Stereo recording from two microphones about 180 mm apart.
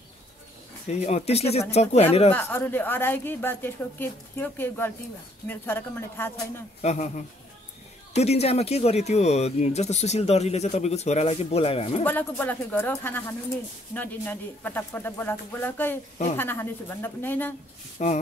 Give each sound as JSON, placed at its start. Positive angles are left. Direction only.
{"t": 0.8, "sound": "speech", "side_deg": 40}
{"t": 2.3, "sound": "a woman's voice", "side_deg": 10}
{"t": 6.8, "sound": "speech", "side_deg": 40}
{"t": 12.0, "sound": "a woman's voice", "side_deg": 10}
{"t": 18.0, "sound": "speech", "side_deg": 40}